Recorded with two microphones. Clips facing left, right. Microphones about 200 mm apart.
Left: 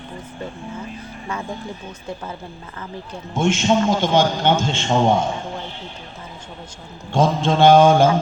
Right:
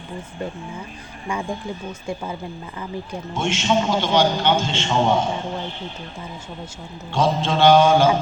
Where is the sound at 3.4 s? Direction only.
45° left (ahead or behind).